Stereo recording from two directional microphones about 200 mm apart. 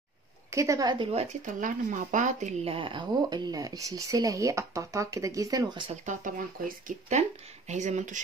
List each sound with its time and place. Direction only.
0.5 s speech: 15° right (ahead or behind)
1.4 s speech: 40° right (ahead or behind); by 5.9 s 15° right (ahead or behind)
6.0 s speech: 40° right (ahead or behind)